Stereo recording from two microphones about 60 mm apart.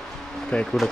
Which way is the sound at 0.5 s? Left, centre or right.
Centre.